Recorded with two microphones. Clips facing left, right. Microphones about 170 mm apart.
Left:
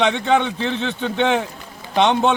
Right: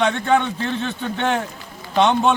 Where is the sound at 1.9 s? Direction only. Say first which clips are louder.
Even; 15° left (ahead or behind).